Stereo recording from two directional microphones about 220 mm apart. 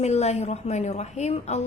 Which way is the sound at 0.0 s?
30° left (ahead or behind).